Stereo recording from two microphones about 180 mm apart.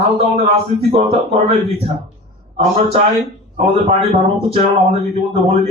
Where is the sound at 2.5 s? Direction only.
35° right (ahead or behind).